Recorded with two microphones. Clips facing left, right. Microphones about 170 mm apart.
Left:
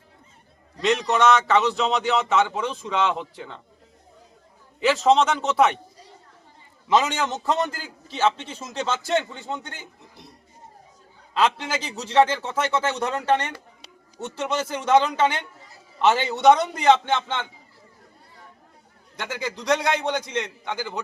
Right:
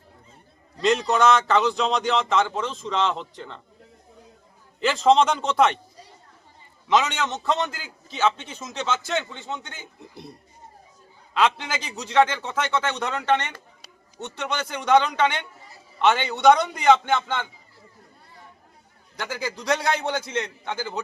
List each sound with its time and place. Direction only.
0.8 s a man's voice: centre (ahead or behind)
4.8 s a man's voice: 5° left (ahead or behind)
6.9 s a man's voice: 35° left (ahead or behind)
11.6 s a man's voice: centre (ahead or behind)
11.9 s speech: 30° left (ahead or behind)
14.2 s a man's voice: 10° left (ahead or behind)
14.5 s a man's voice: 30° left (ahead or behind)
16.2 s a man's voice: centre (ahead or behind)
19.2 s a man's voice: centre (ahead or behind)
19.7 s a man's voice: 20° left (ahead or behind)